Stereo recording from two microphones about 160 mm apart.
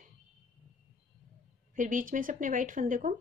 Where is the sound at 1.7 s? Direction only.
55° right (ahead or behind).